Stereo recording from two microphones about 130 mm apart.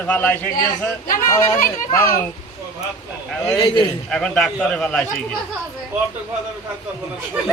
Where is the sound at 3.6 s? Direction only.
40° left (ahead or behind).